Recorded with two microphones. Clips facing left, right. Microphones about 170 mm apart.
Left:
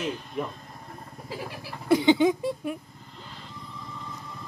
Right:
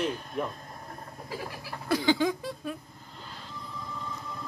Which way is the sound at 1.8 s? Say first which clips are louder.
Left 6 dB; 20° left (ahead or behind).